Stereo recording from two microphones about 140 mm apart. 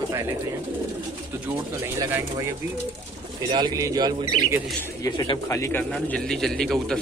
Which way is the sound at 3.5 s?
30° right (ahead or behind).